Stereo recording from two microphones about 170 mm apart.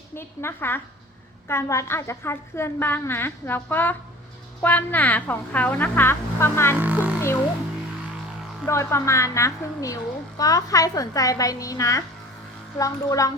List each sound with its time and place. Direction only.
0.2 s a woman's voice: 15° left (ahead or behind)
6.7 s music: 10° right (ahead or behind)
8.6 s a woman's voice: 15° left (ahead or behind)